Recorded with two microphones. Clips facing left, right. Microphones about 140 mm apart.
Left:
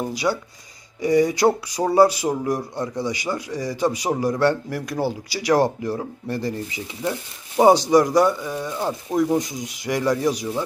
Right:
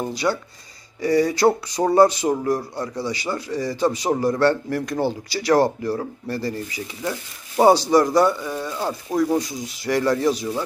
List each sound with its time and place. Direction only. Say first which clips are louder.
0.0 s speech: even; 10° left (ahead or behind)